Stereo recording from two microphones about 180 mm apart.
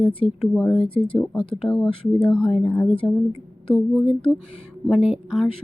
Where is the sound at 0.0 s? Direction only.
30° left (ahead or behind).